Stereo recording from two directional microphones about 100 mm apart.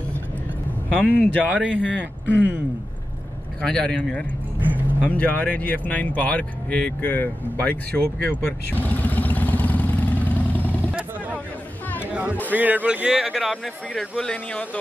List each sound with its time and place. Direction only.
0.9 s a man's voice: 15° left (ahead or behind)
3.6 s a man's voice: 10° left (ahead or behind)
4.6 s speech: 15° right (ahead or behind)
5.1 s speech: 15° left (ahead or behind)
10.9 s vehicle: 15° right (ahead or behind)
12.0 s a sound: 15° right (ahead or behind)
12.4 s a man's voice: 15° right (ahead or behind); by 14.8 s 15° left (ahead or behind)